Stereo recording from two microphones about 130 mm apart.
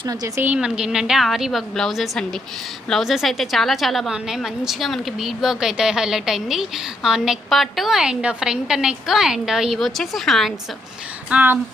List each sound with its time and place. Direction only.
0.0 s a woman's voice: 30° right (ahead or behind)
0.4 s a woman's voice: 10° right (ahead or behind)
11.3 s speech: 15° right (ahead or behind)